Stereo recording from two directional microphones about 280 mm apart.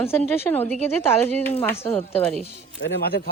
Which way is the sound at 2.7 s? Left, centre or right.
Left.